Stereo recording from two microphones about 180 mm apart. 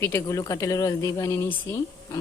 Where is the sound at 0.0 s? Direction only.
15° left (ahead or behind).